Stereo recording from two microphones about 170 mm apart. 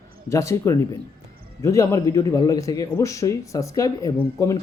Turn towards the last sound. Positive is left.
turn(degrees=15)  # may be behind; listen again after turning